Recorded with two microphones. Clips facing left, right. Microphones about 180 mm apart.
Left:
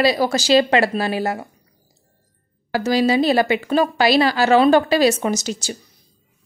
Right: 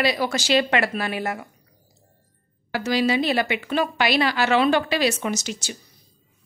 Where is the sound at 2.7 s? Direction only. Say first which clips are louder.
Left 4 dB; 40° left (ahead or behind).